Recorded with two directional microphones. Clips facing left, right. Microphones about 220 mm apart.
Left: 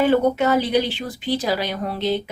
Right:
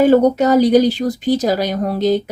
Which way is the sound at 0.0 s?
40° right (ahead or behind).